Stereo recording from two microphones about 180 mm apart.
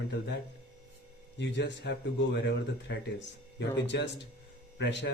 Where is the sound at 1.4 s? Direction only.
75° left (ahead or behind).